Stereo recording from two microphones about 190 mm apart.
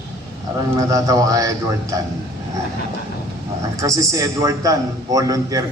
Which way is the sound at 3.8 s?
15° right (ahead or behind).